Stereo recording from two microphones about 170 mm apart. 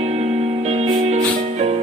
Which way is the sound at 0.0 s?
35° right (ahead or behind).